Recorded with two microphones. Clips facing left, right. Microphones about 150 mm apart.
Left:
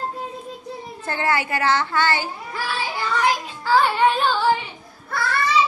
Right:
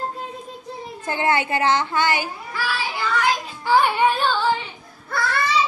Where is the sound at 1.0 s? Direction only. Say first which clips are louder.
Right 2 dB; 20° right (ahead or behind).